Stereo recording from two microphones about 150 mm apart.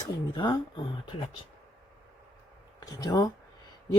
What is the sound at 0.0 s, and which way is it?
Speech, 25° left (ahead or behind).